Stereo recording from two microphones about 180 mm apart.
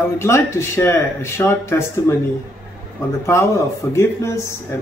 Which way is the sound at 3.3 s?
15° left (ahead or behind).